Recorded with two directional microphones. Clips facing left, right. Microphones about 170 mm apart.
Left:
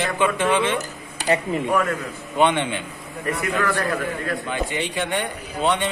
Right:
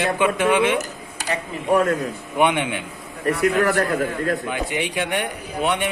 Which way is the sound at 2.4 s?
10° right (ahead or behind).